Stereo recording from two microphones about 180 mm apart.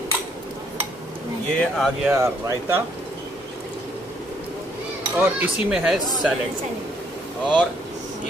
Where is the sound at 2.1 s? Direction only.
15° right (ahead or behind).